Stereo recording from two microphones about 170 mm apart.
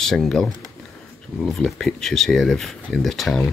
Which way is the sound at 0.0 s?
Centre (ahead or behind).